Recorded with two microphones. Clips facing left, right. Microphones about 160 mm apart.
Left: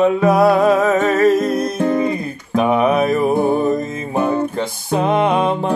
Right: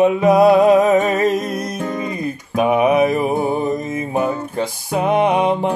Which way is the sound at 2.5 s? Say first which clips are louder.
Even; 15° right (ahead or behind).